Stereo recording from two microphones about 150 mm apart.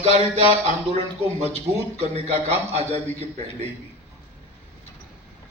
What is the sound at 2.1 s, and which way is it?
Speech, 45° right (ahead or behind).